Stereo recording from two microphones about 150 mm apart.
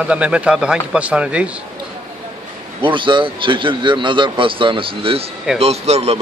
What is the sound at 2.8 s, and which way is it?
A man's voice, 35° right (ahead or behind).